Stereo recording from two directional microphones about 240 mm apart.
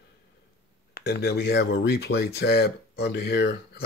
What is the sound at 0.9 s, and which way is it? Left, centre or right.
Speech, left.